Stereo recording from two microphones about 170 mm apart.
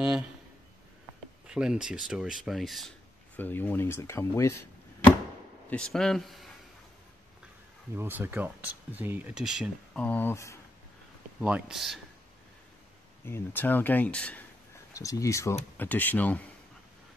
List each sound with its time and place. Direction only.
1.5 s speech: 5° right (ahead or behind)
3.3 s speech: 10° left (ahead or behind)
5.7 s speech: 5° left (ahead or behind)
7.9 s speech: 15° right (ahead or behind)
10.0 s speech: 10° left (ahead or behind)
11.4 s speech: 5° right (ahead or behind)
13.2 s speech: 15° left (ahead or behind)
15.0 s speech: 20° left (ahead or behind)